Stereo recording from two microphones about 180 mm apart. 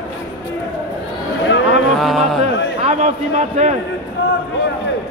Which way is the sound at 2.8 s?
40° right (ahead or behind).